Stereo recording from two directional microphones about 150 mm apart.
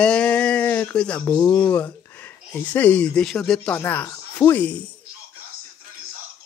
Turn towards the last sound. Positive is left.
turn(degrees=10)  # may be behind; listen again after turning